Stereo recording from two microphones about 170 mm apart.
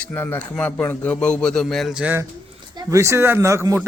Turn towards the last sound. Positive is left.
turn(degrees=-15)  # may be behind; listen again after turning